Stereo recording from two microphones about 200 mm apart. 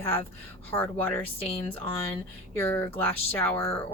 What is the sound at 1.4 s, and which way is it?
Speech, 30° left (ahead or behind).